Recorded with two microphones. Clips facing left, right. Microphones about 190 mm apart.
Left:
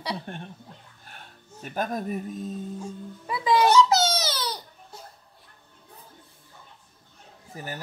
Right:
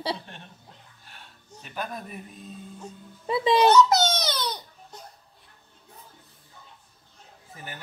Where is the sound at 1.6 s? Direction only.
45° left (ahead or behind).